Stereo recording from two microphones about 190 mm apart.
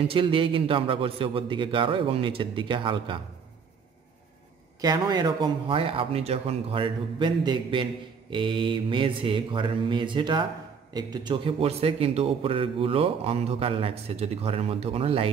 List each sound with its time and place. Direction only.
0.0 s speech: 25° right (ahead or behind)
4.8 s a man's voice: 20° right (ahead or behind)